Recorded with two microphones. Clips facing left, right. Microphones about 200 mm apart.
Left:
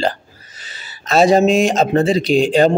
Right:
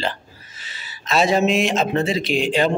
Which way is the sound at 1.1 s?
40° left (ahead or behind).